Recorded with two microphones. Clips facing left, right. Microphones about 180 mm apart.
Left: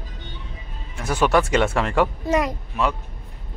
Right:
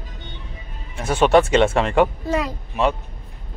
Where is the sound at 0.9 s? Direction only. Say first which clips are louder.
Right 4 dB; 25° right (ahead or behind).